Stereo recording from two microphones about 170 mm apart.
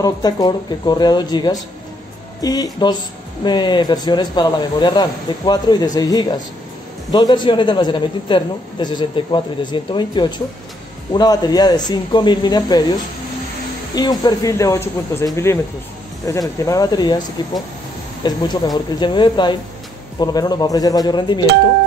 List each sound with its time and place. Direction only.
0.0 s a man's voice: 25° left (ahead or behind)